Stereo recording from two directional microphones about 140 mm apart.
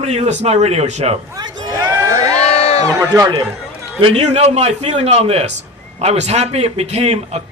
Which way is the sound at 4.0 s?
50° right (ahead or behind).